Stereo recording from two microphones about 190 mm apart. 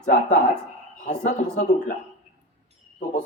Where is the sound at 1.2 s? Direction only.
40° left (ahead or behind).